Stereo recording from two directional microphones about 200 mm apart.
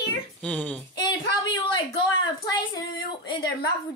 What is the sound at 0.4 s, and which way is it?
Speech, 5° left (ahead or behind).